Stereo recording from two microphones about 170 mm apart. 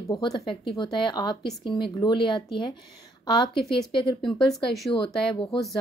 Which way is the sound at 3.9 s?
30° left (ahead or behind).